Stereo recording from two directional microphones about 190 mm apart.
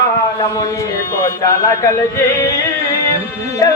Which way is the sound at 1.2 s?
15° left (ahead or behind).